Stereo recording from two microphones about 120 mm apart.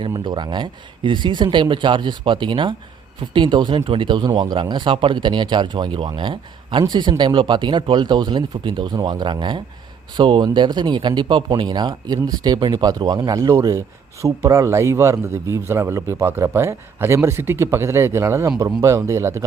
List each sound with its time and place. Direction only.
0.1 s speech: 35° right (ahead or behind)